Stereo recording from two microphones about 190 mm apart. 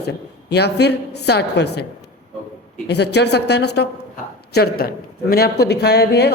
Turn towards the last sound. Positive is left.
turn(degrees=60)  # may be behind; listen again after turning